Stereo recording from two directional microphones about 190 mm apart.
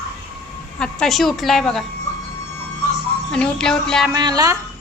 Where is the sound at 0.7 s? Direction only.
5° left (ahead or behind).